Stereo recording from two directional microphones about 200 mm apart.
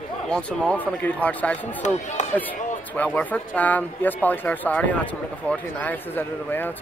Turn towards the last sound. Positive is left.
turn(degrees=10)  # may be behind; listen again after turning